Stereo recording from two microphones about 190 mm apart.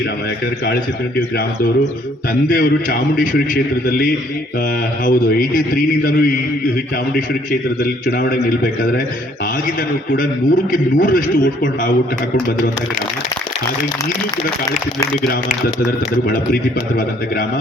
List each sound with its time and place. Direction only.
2.5 s a man's voice: 45° left (ahead or behind)
8.0 s a man's voice: 45° left (ahead or behind)
10.2 s a man's voice: 45° left (ahead or behind)